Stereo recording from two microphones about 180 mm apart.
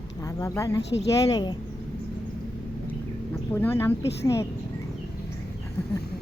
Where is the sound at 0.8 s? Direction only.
75° left (ahead or behind).